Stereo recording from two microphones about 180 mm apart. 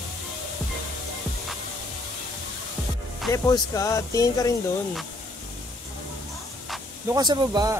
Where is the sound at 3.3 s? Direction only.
15° left (ahead or behind).